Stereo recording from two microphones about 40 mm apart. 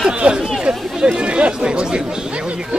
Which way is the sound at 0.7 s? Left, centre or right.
Right.